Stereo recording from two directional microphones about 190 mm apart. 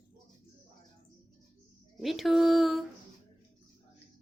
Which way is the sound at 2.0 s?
Centre (ahead or behind).